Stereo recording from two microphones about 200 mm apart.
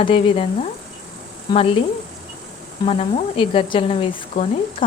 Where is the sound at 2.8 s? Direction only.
30° left (ahead or behind).